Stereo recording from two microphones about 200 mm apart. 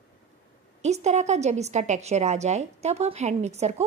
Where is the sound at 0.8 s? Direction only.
35° right (ahead or behind).